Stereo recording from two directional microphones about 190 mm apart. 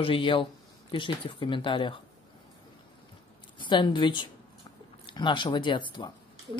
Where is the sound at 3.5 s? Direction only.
25° left (ahead or behind).